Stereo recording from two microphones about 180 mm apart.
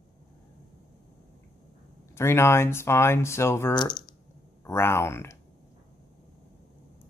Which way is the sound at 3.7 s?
25° left (ahead or behind).